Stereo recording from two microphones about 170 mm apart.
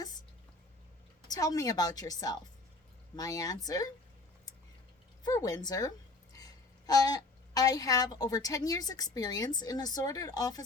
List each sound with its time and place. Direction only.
1.3 s speech: 20° left (ahead or behind)
5.2 s a woman's voice: 20° left (ahead or behind)